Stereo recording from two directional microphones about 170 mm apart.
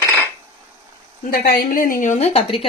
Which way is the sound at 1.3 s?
60° left (ahead or behind).